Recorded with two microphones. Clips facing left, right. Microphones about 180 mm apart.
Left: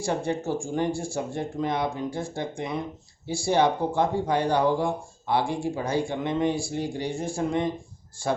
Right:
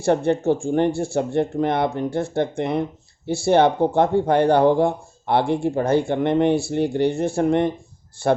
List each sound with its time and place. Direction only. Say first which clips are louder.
0.0 s speech: right 8 dB; 60° right (ahead or behind)